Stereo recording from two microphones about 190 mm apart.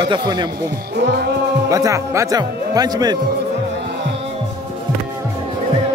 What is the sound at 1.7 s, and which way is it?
Speech, 15° right (ahead or behind).